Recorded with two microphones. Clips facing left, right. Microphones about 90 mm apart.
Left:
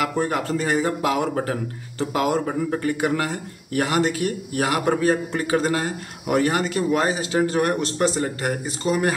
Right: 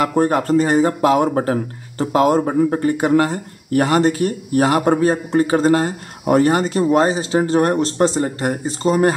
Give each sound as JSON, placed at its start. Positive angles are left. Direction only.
{"t": 0.1, "sound": "speech", "side_deg": -45}